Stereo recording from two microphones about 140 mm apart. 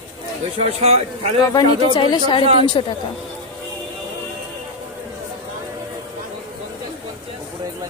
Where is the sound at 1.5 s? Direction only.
30° left (ahead or behind).